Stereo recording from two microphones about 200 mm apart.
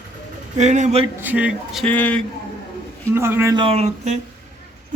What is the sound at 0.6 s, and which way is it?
Speech, 35° right (ahead or behind).